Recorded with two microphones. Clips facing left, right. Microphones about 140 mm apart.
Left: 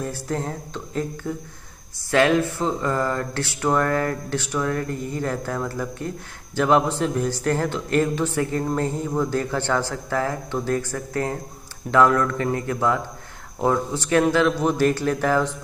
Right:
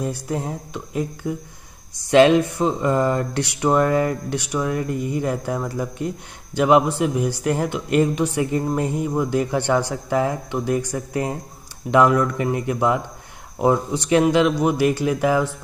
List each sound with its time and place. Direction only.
0.0 s speech: 15° right (ahead or behind)